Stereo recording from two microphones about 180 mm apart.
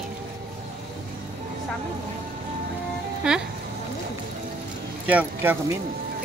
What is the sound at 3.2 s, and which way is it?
Speech, 5° right (ahead or behind).